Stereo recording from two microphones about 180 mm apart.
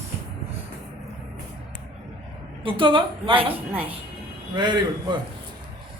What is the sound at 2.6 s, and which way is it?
A woman's voice, 30° right (ahead or behind).